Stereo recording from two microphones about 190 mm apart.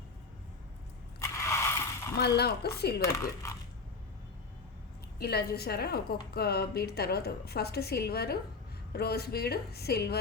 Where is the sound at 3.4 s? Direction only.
15° left (ahead or behind).